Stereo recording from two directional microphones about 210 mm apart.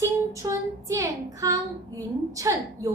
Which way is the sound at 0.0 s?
15° right (ahead or behind).